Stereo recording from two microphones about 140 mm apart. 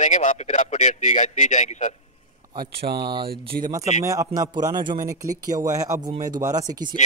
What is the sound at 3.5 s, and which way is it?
Speech, 90° right.